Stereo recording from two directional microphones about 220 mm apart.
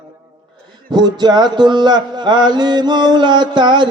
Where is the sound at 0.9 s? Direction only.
20° right (ahead or behind).